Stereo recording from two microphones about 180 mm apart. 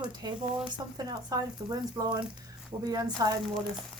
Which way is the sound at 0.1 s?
25° right (ahead or behind).